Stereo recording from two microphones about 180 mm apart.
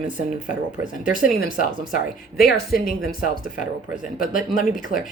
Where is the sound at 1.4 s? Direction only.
50° left (ahead or behind).